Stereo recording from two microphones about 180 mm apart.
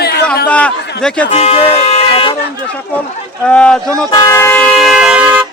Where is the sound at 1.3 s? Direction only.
35° left (ahead or behind).